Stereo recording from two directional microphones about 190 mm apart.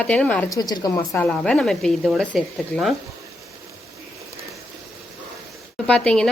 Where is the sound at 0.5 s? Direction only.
20° left (ahead or behind).